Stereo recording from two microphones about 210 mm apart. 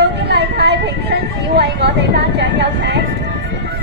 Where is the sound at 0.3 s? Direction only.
55° right (ahead or behind).